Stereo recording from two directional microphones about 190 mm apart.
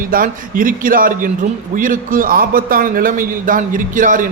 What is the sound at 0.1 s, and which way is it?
A man's voice, 45° right (ahead or behind).